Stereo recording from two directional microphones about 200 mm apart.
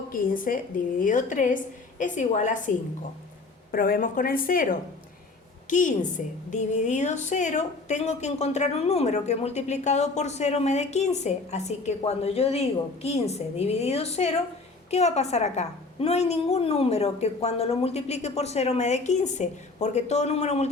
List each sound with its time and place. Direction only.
0.1 s a woman's voice: 45° left (ahead or behind)